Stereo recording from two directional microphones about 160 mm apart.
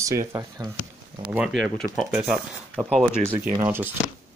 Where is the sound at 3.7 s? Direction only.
15° right (ahead or behind).